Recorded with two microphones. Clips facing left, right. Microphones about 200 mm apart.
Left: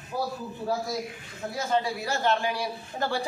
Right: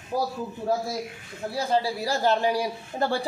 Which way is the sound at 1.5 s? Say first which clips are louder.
Right 2 dB; 30° right (ahead or behind).